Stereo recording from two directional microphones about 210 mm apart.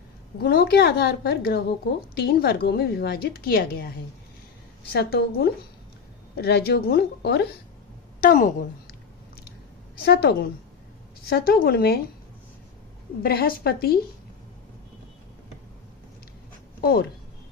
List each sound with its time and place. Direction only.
0.3 s a woman's voice: 45° left (ahead or behind)
8.2 s a woman's voice: 40° left (ahead or behind)
10.0 s a woman's voice: 50° left (ahead or behind)
13.2 s a woman's voice: 45° left (ahead or behind)
16.8 s a woman's voice: 45° left (ahead or behind)